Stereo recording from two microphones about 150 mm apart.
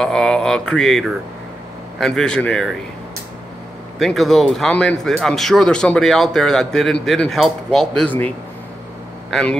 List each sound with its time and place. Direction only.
0.0 s speech: 5° left (ahead or behind)
4.0 s speech: centre (ahead or behind)
9.3 s speech: 5° left (ahead or behind)